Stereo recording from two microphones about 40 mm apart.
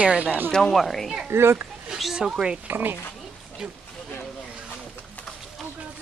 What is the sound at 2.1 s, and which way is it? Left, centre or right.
Speech, centre.